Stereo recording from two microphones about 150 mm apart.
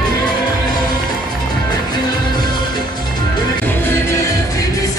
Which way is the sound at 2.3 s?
30° left (ahead or behind).